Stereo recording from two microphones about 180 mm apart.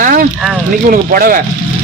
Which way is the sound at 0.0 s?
50° right (ahead or behind).